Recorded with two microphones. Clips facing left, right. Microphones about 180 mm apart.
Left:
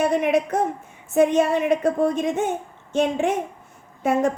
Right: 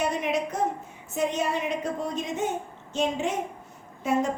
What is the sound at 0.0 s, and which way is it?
A woman's voice, 55° left (ahead or behind).